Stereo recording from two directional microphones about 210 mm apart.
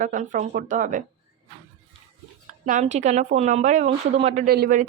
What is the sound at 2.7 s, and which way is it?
Speech, 35° right (ahead or behind).